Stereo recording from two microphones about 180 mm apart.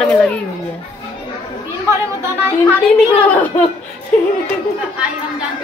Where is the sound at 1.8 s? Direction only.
15° right (ahead or behind).